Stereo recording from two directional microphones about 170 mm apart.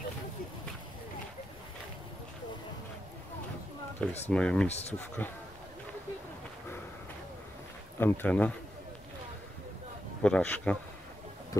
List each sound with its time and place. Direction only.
4.3 s speech: 5° left (ahead or behind)
4.6 s speech: 40° left (ahead or behind)
4.9 s speech: 10° left (ahead or behind)
8.0 s speech: 10° left (ahead or behind)
10.2 s speech: 10° left (ahead or behind)